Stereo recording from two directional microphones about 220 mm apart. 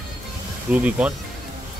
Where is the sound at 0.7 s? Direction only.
5° right (ahead or behind).